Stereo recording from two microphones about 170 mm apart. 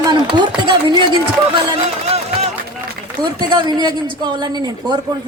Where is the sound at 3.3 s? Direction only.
25° right (ahead or behind).